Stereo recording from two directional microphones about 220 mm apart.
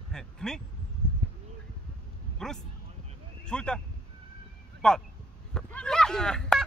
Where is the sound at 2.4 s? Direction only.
5° left (ahead or behind).